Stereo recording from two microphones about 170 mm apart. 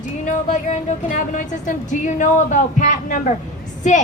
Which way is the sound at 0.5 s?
45° left (ahead or behind).